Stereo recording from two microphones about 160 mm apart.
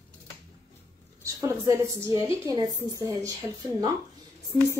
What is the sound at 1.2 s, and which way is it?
Speech, 20° right (ahead or behind).